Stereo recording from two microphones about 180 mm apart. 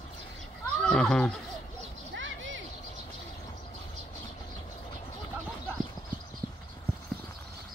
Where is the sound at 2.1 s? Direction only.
90° right.